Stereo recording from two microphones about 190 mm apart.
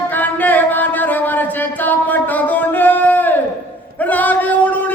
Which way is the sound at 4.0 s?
10° left (ahead or behind).